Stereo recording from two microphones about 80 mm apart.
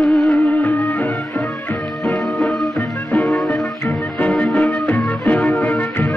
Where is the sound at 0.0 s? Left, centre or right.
Centre.